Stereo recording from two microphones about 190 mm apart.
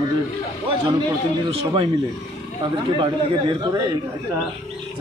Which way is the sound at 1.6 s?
25° right (ahead or behind).